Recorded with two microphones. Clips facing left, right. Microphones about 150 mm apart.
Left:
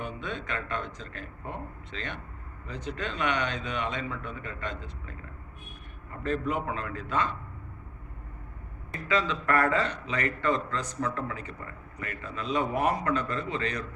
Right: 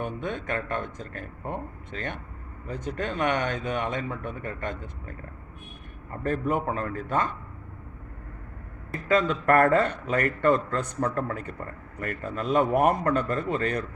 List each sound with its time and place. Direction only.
0.0 s a man's voice: 50° right (ahead or behind)
6.2 s a man's voice: 50° right (ahead or behind)
9.0 s a man's voice: 50° right (ahead or behind)